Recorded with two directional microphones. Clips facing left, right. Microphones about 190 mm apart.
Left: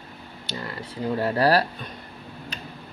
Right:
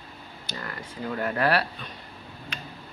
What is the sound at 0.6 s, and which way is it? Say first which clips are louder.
Speech: left 5 dB; 30° left (ahead or behind).